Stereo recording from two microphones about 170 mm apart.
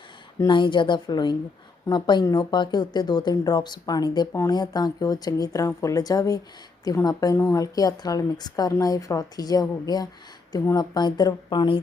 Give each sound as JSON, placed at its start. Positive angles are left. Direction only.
{"t": 0.3, "sound": "speech", "side_deg": 25}